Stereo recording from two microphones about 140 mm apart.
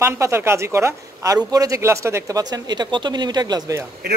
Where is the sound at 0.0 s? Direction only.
20° right (ahead or behind).